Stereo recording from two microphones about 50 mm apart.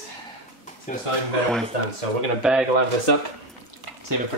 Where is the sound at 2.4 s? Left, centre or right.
Centre.